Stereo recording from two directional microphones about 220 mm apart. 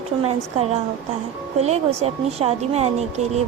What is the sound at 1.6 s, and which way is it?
Speech, 30° right (ahead or behind).